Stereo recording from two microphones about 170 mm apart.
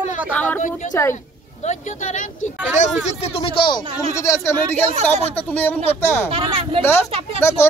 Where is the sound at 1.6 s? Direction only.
50° left (ahead or behind).